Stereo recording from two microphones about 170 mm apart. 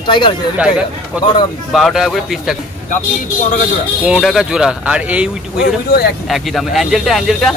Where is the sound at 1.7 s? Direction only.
Centre (ahead or behind).